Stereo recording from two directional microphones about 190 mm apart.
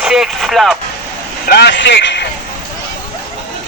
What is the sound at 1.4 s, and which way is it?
Speech, 60° left (ahead or behind).